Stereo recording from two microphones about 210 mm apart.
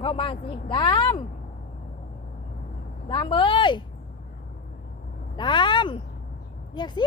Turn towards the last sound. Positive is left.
turn(degrees=20)  # may be behind; listen again after turning